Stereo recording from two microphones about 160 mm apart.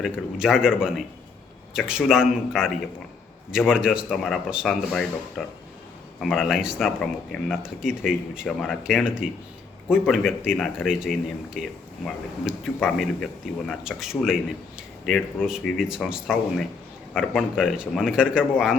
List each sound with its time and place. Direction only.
0.0 s speech: 5° right (ahead or behind)